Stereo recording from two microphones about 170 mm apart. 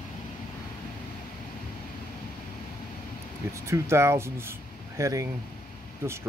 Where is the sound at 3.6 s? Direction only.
15° right (ahead or behind).